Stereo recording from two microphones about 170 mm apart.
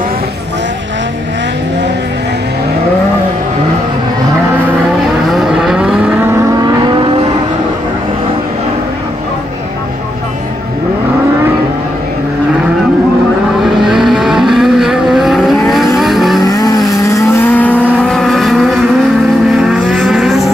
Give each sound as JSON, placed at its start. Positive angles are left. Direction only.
{"t": 5.3, "sound": "vehicle", "side_deg": -5}
{"t": 13.7, "sound": "vehicle", "side_deg": 0}
{"t": 16.4, "sound": "vehicle", "side_deg": 20}